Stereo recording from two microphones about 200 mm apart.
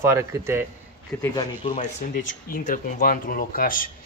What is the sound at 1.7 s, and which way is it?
Speech, 40° left (ahead or behind).